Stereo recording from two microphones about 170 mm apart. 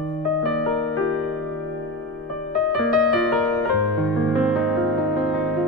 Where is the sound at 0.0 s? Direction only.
Centre (ahead or behind).